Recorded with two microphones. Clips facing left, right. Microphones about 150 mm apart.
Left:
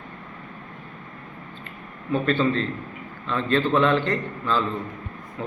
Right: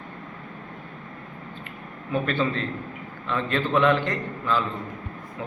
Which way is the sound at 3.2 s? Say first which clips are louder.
Left 3 dB; 10° right (ahead or behind).